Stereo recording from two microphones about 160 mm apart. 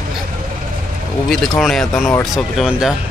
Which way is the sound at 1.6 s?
Centre (ahead or behind).